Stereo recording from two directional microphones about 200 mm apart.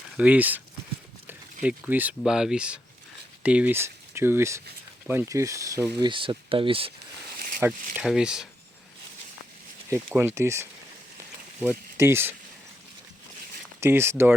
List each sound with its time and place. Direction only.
0.2 s speech: 10° right (ahead or behind)
1.6 s speech: 10° right (ahead or behind); by 6.9 s 25° right (ahead or behind)
7.3 s a sound: 45° right (ahead or behind)
7.9 s speech: 5° right (ahead or behind)
10.2 s speech: 15° right (ahead or behind)
13.7 s speech: 10° right (ahead or behind)